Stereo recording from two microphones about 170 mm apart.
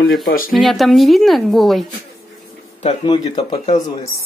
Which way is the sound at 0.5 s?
Centre (ahead or behind).